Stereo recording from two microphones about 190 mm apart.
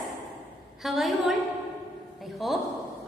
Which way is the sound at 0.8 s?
Centre (ahead or behind).